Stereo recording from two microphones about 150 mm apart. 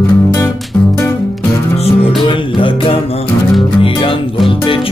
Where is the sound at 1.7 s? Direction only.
45° left (ahead or behind).